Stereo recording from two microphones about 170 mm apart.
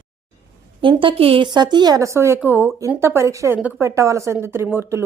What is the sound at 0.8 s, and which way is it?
A woman's voice, 30° right (ahead or behind).